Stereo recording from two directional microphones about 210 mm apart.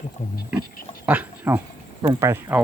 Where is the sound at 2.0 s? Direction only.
15° right (ahead or behind).